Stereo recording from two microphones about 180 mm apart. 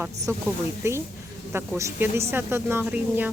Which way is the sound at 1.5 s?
15° right (ahead or behind).